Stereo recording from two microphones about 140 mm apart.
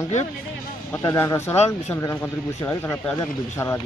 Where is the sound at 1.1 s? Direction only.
20° left (ahead or behind).